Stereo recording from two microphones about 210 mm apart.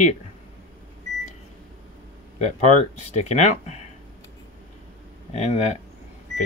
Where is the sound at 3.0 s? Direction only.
30° left (ahead or behind).